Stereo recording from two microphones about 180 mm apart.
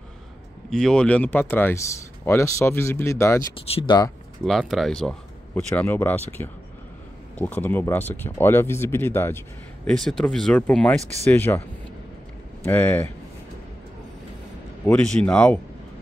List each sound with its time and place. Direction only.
0.7 s speech: 5° left (ahead or behind)
3.5 s speech: 30° left (ahead or behind)
4.5 s speech: centre (ahead or behind)
12.6 s speech: 10° left (ahead or behind)
14.9 s speech: 5° left (ahead or behind)